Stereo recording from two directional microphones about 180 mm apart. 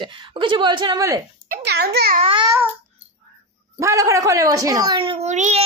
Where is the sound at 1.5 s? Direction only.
65° right (ahead or behind).